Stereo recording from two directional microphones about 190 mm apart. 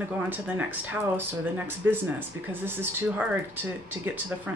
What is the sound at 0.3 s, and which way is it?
Speech, 10° right (ahead or behind).